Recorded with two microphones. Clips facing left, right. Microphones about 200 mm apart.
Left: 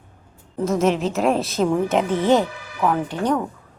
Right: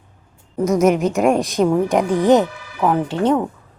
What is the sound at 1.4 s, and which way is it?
A woman's voice, 15° right (ahead or behind).